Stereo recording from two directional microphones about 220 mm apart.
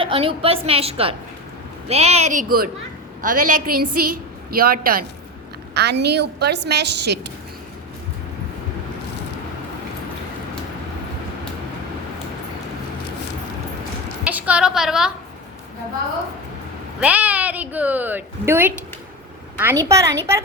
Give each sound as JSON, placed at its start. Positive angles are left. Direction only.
{"t": 0.0, "sound": "a woman's voice", "side_deg": -25}
{"t": 14.3, "sound": "a sound", "side_deg": -5}
{"t": 17.0, "sound": "a woman's voice", "side_deg": -5}